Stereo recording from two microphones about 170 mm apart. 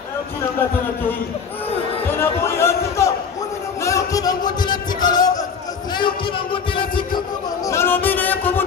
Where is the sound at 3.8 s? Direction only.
20° left (ahead or behind).